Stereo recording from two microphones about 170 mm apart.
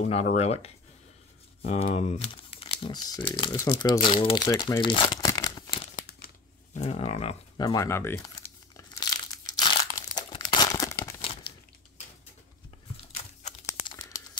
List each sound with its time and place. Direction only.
0.0 s speech: 45° left (ahead or behind); by 5.9 s 25° left (ahead or behind)
6.7 s speech: 40° left (ahead or behind)
7.5 s speech: 20° left (ahead or behind)
8.7 s crumpling: 20° left (ahead or behind)
13.7 s crumpling: 25° left (ahead or behind)